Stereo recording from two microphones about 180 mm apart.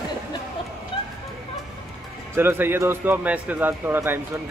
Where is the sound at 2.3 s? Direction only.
10° right (ahead or behind).